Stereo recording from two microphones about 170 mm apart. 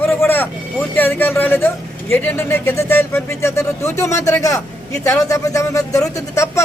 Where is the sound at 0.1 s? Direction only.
10° left (ahead or behind).